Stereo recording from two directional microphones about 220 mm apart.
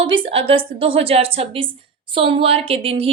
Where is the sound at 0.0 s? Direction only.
20° right (ahead or behind).